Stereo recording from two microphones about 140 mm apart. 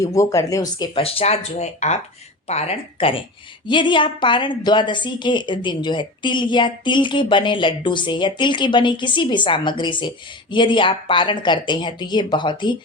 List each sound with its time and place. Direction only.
0.0 s speech: 20° left (ahead or behind)
0.9 s a woman's voice: 45° left (ahead or behind)